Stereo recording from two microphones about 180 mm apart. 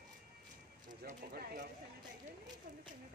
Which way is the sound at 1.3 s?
60° right (ahead or behind).